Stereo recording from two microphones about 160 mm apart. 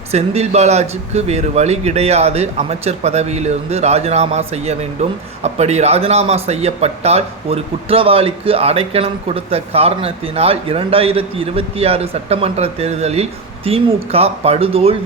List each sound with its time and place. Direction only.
0.1 s speech: 40° right (ahead or behind)